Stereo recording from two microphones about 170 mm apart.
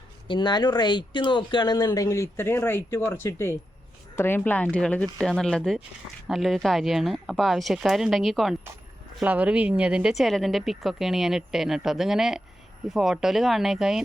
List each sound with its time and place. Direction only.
0.3 s speech: 25° left (ahead or behind); by 14.0 s centre (ahead or behind)